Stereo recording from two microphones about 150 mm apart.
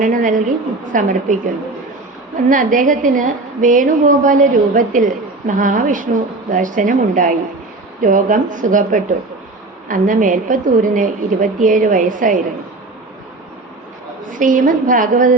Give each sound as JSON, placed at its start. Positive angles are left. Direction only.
{"t": 0.0, "sound": "a woman's voice", "side_deg": -60}
{"t": 2.5, "sound": "a woman's voice", "side_deg": -60}
{"t": 14.3, "sound": "a woman's voice", "side_deg": -60}